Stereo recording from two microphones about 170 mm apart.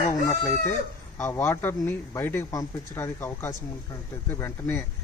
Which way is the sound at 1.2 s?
15° left (ahead or behind).